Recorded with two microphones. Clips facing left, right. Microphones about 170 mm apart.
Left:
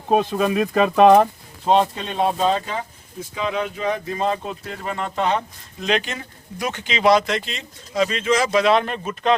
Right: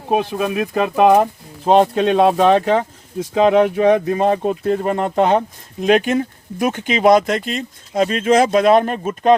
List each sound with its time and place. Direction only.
0.1 s speech: 10° right (ahead or behind)
1.6 s speech: 55° right (ahead or behind)